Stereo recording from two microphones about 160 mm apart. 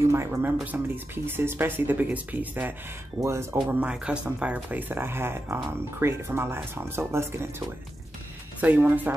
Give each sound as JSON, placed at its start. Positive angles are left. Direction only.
{"t": 0.1, "sound": "speech", "side_deg": -15}
{"t": 8.5, "sound": "speech", "side_deg": -10}